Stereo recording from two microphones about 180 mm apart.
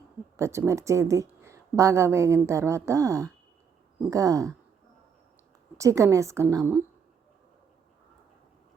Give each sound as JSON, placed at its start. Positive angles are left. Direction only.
{"t": 0.3, "sound": "a woman's voice", "side_deg": -15}
{"t": 5.7, "sound": "a woman's voice", "side_deg": -15}